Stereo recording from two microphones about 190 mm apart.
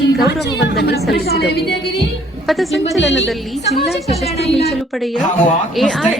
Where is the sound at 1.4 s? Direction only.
60° left (ahead or behind).